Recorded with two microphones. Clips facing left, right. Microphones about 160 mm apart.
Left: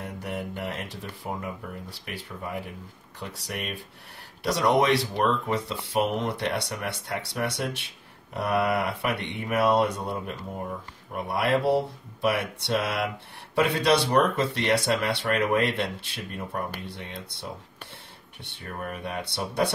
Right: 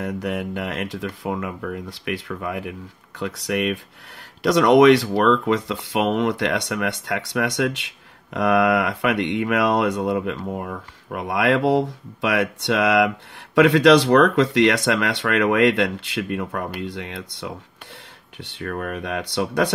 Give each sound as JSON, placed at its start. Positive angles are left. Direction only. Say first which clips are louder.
{"t": 0.0, "sound": "speech", "louder": "right 8 dB", "side_deg": -90}
{"t": 18.6, "sound": "speech", "louder": "right 7 dB", "side_deg": -90}